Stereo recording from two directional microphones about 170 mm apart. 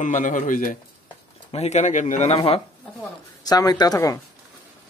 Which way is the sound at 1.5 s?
40° left (ahead or behind).